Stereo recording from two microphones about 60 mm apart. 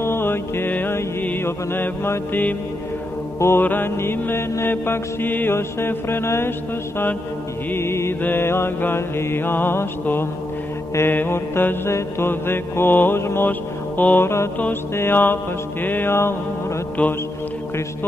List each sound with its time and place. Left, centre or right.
0.0 s music: left
1.4 s mantra: left
3.3 s mantra: left
7.7 s mantra: left
13.5 s music: left
14.2 s mantra: left
14.7 s mantra: left
17.0 s mantra: left